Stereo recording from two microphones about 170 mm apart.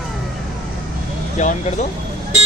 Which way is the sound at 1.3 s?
45° left (ahead or behind).